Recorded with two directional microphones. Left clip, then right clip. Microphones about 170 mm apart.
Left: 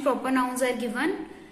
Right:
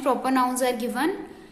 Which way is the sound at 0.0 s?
30° right (ahead or behind).